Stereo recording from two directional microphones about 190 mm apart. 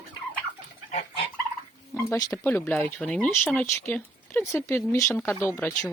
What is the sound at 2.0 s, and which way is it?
Speech, 15° left (ahead or behind).